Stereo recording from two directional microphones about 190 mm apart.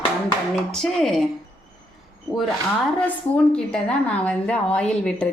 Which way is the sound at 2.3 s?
Centre (ahead or behind).